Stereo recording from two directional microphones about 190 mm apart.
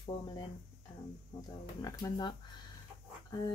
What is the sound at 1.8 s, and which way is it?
Speech, 20° left (ahead or behind).